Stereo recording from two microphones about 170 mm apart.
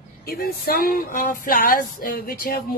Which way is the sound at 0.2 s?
65° left (ahead or behind).